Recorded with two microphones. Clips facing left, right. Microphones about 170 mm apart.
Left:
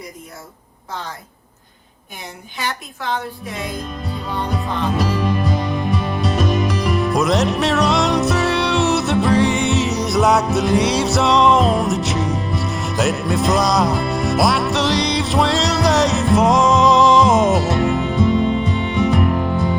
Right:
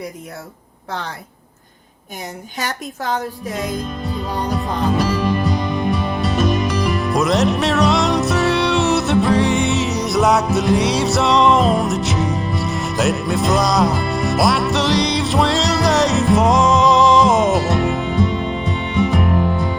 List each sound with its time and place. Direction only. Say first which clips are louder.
2.6 s a woman's voice: right 1 dB; 40° right (ahead or behind)
4.9 s music: right 1 dB; centre (ahead or behind)